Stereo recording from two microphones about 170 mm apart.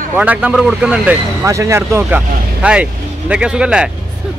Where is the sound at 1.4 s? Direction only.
15° right (ahead or behind).